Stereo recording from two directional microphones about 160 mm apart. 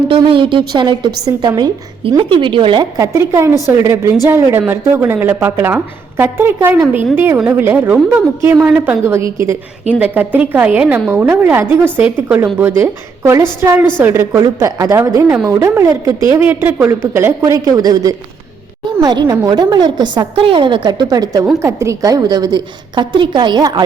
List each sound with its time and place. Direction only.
0.1 s a woman's voice: 35° right (ahead or behind)
3.0 s a woman's voice: 15° right (ahead or behind)